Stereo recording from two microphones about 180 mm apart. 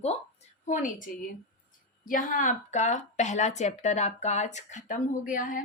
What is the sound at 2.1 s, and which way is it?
A woman's voice, 50° left (ahead or behind).